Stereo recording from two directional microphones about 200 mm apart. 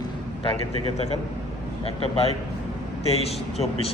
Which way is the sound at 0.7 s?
30° right (ahead or behind).